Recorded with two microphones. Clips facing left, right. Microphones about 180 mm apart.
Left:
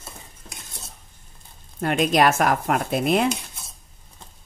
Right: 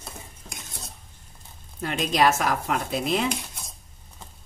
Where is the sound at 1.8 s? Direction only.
55° left (ahead or behind).